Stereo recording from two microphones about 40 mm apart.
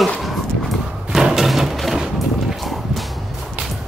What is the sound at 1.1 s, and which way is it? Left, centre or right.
Thump, centre.